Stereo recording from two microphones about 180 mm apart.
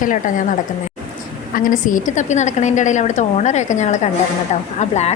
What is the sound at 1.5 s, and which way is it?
A woman's voice, 50° left (ahead or behind).